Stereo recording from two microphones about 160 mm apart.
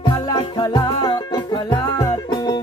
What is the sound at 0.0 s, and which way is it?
Music, 30° left (ahead or behind).